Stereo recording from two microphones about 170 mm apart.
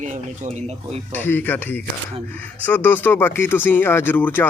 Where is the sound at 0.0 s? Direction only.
45° right (ahead or behind).